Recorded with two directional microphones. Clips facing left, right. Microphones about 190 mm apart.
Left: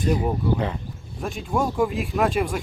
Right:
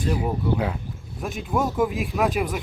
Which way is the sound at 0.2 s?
5° right (ahead or behind).